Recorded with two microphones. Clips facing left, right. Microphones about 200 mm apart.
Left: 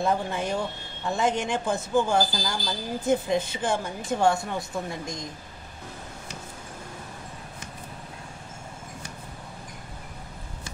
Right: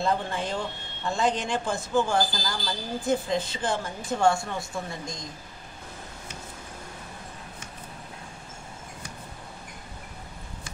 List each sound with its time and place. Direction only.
0.0 s a woman's voice: 15° left (ahead or behind)